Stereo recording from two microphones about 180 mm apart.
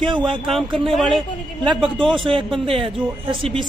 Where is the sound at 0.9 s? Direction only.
Centre (ahead or behind).